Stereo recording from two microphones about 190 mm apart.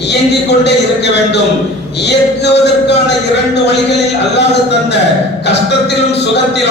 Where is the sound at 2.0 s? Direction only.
65° left (ahead or behind).